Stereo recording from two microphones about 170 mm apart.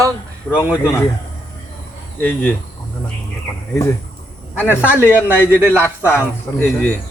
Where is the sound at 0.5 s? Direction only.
10° right (ahead or behind).